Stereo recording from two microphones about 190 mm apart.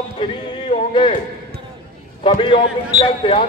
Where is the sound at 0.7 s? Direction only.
30° left (ahead or behind).